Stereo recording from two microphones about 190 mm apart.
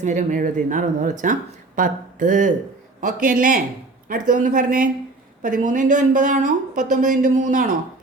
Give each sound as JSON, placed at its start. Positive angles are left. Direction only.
{"t": 0.0, "sound": "speech", "side_deg": -40}